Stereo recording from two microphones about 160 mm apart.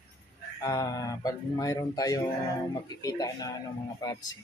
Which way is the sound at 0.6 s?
20° left (ahead or behind).